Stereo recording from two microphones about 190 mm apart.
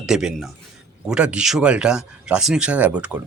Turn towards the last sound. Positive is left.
turn(degrees=-5)  # may be behind; listen again after turning